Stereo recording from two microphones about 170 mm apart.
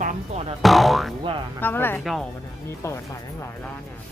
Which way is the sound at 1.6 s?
10° left (ahead or behind).